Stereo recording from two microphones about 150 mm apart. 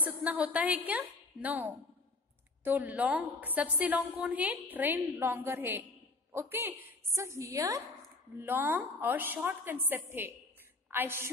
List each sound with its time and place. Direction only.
0.0 s a woman's voice: 10° right (ahead or behind)